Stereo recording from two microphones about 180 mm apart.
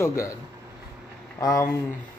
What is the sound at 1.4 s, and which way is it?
Speech, 20° left (ahead or behind).